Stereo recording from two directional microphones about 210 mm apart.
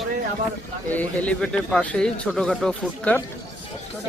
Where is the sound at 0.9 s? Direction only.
5° left (ahead or behind).